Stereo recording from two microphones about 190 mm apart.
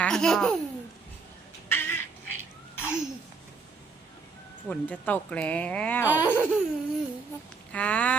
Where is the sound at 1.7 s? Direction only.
10° left (ahead or behind).